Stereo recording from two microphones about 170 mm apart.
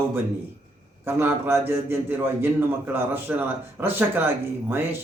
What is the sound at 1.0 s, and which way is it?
A man's voice, 15° right (ahead or behind).